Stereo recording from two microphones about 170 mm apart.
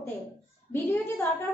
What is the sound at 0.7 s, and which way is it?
Speech, 10° left (ahead or behind).